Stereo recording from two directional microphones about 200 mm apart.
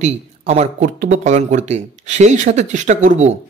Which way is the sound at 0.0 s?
35° right (ahead or behind).